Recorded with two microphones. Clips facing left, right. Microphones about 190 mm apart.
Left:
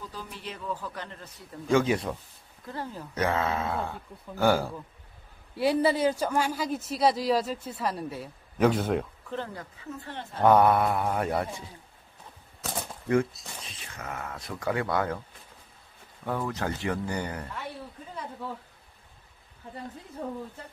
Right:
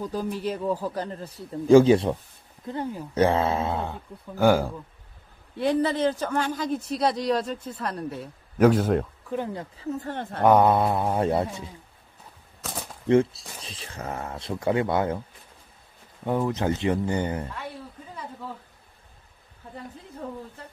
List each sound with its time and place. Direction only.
0.0 s a man's voice: 45° right (ahead or behind)
2.6 s speech: 20° right (ahead or behind)
3.2 s speech: 30° right (ahead or behind); by 4.7 s 15° right (ahead or behind)
5.6 s speech: 10° left (ahead or behind)
9.4 s speech: 25° right (ahead or behind)
9.8 s speech: 40° right (ahead or behind)
10.4 s speech: 15° right (ahead or behind)
13.1 s speech: 30° right (ahead or behind)
16.3 s speech: 20° right (ahead or behind)